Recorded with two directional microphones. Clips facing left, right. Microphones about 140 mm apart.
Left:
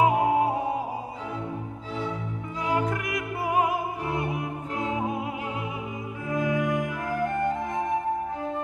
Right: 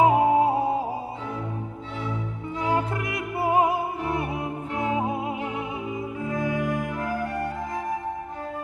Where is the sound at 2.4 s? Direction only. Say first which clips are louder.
Right 1 dB; 30° right (ahead or behind).